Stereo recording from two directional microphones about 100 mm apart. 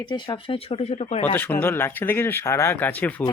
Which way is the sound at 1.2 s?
20° left (ahead or behind).